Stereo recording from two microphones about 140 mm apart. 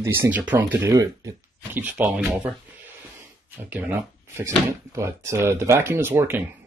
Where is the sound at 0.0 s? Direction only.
20° right (ahead or behind).